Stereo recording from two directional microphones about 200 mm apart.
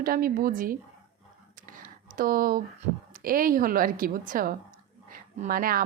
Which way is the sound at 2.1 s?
45° right (ahead or behind).